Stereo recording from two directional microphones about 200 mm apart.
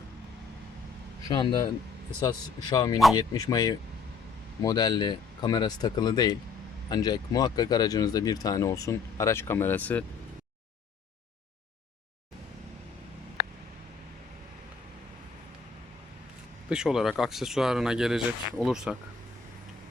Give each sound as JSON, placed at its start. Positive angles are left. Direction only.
{"t": 1.3, "sound": "speech", "side_deg": 20}
{"t": 16.6, "sound": "speech", "side_deg": -5}